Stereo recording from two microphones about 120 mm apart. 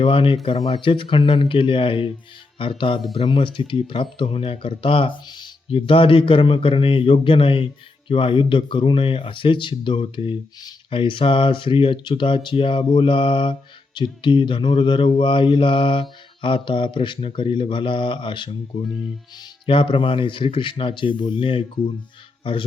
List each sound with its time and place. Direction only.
0.0 s speech: 45° left (ahead or behind)